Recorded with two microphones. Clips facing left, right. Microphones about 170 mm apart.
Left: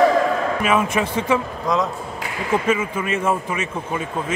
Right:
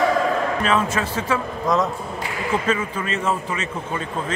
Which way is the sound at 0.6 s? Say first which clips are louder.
Left 2 dB; 10° left (ahead or behind).